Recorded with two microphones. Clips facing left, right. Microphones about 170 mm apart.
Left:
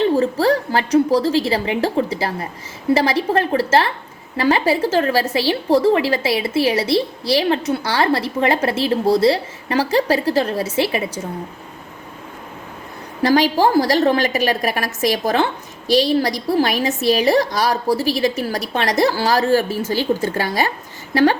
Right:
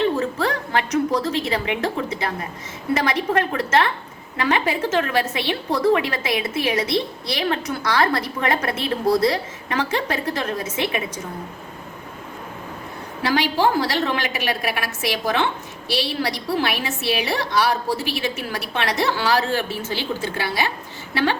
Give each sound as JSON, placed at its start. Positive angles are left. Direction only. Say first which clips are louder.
{"t": 0.0, "sound": "a woman's voice", "louder": "left 5 dB", "side_deg": 35}
{"t": 13.2, "sound": "a woman's voice", "louder": "left 5 dB", "side_deg": 45}